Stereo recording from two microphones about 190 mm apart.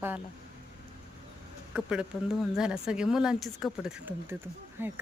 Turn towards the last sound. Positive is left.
turn(degrees=-10)  # may be behind; listen again after turning